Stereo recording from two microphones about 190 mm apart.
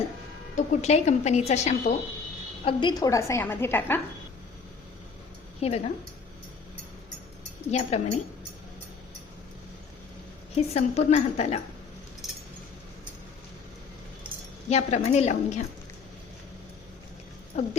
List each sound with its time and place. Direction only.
0.5 s a woman's voice: 35° left (ahead or behind)
2.6 s a woman's voice: 20° left (ahead or behind)
5.5 s a woman's voice: 35° left (ahead or behind)
7.7 s a woman's voice: 35° left (ahead or behind)
10.5 s a woman's voice: 35° left (ahead or behind)
12.2 s a sound: centre (ahead or behind)
14.7 s a woman's voice: 35° left (ahead or behind)
17.5 s a woman's voice: 40° left (ahead or behind)